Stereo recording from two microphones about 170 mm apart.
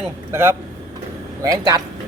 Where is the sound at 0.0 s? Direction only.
15° right (ahead or behind).